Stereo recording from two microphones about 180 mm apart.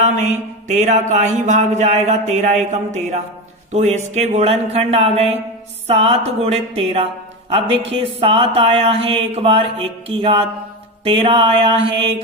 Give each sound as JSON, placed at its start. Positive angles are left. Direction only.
{"t": 0.0, "sound": "speech", "side_deg": -40}
{"t": 8.2, "sound": "speech", "side_deg": -30}